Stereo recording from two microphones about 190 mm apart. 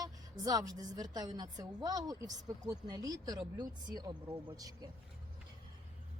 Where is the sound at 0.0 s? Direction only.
20° right (ahead or behind).